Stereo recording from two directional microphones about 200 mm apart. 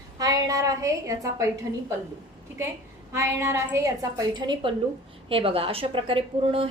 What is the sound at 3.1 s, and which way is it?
A woman's voice, 15° right (ahead or behind).